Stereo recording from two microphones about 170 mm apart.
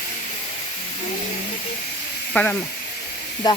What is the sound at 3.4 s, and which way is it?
Speech, 25° left (ahead or behind).